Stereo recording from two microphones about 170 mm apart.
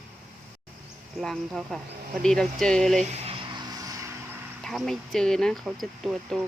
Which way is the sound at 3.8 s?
20° right (ahead or behind).